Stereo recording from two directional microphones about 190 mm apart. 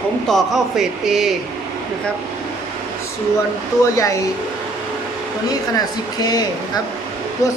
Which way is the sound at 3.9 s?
15° left (ahead or behind).